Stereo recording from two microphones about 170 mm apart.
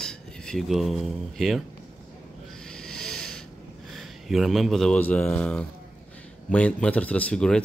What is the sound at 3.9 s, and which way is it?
Speech, centre (ahead or behind).